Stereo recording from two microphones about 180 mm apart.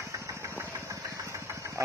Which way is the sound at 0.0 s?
15° right (ahead or behind).